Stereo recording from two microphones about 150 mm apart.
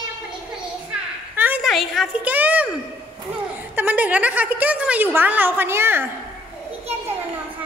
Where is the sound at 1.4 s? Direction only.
10° right (ahead or behind).